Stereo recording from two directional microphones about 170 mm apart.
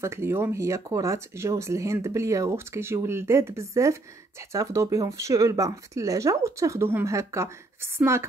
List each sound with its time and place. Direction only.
0.0 s speech: 15° right (ahead or behind)